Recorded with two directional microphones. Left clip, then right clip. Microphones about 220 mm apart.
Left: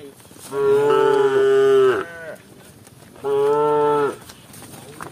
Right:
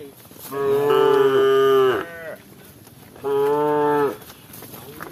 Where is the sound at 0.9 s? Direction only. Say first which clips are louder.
Even; 5° left (ahead or behind).